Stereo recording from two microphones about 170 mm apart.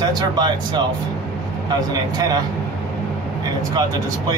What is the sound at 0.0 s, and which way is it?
Speech, 25° right (ahead or behind).